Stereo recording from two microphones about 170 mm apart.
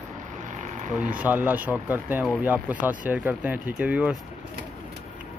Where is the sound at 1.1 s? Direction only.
10° right (ahead or behind).